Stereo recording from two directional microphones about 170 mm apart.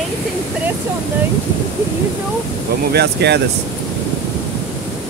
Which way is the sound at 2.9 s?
75° right (ahead or behind).